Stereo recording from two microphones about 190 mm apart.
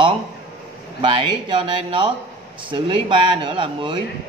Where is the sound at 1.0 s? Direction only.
25° right (ahead or behind).